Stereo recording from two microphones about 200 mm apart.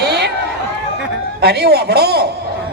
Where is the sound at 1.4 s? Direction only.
55° right (ahead or behind).